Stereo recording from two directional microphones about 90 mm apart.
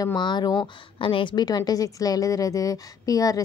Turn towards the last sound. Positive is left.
turn(degrees=40)  # may be behind; listen again after turning